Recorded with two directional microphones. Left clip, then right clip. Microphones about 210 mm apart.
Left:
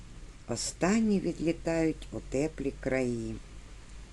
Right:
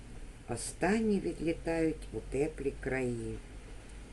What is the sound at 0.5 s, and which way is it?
Speech, 45° left (ahead or behind).